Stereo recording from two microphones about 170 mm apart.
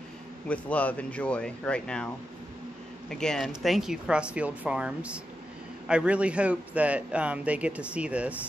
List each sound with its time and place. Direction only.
0.5 s a man's voice: 10° left (ahead or behind); by 8.4 s 5° right (ahead or behind)